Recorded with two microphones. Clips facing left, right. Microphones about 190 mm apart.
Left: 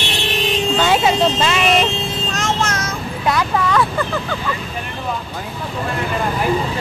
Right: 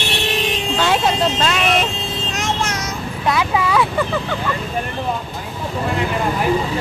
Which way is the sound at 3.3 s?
5° right (ahead or behind).